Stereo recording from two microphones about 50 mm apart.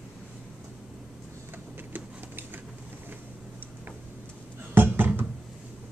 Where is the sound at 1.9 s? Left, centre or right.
Right.